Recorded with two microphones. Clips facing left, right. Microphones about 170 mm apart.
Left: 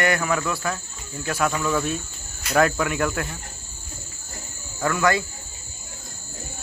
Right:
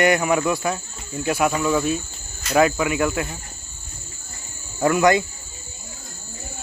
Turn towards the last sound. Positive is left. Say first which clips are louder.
# right 5 dB
turn(degrees=-20)  # may be behind; listen again after turning